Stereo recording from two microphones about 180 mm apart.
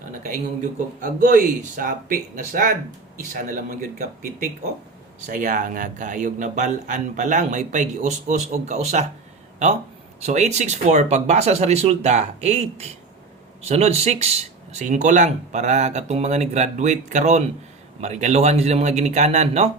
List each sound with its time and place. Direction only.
0.2 s a man's voice: 45° right (ahead or behind)
10.2 s speech: 40° right (ahead or behind)